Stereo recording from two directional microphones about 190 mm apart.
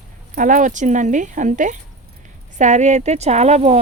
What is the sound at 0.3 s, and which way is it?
Speech, 45° right (ahead or behind).